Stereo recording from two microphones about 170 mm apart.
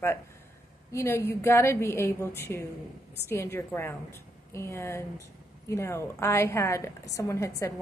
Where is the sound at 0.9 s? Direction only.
15° left (ahead or behind).